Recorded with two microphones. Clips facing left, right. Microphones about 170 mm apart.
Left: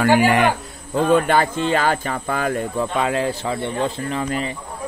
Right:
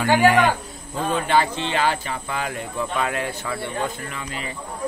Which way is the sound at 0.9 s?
55° left (ahead or behind).